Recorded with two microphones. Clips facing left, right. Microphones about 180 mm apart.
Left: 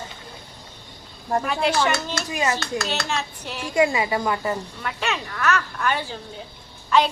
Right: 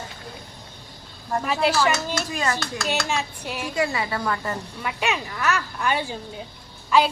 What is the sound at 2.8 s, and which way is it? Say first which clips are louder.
Speech: right 1 dB; 10° right (ahead or behind).